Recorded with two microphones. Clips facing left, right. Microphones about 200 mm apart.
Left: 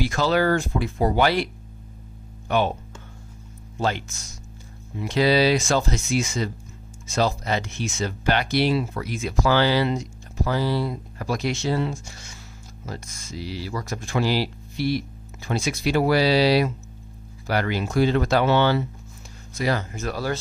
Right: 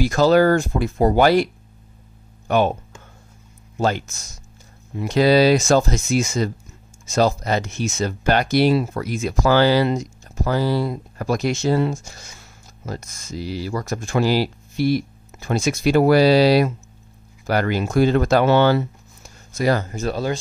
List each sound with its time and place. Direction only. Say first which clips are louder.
0.0 s speech: right 6 dB; 40° right (ahead or behind)
3.7 s speech: right 4 dB; 45° right (ahead or behind)